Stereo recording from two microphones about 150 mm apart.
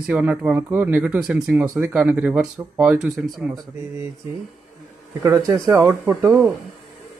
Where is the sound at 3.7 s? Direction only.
20° right (ahead or behind).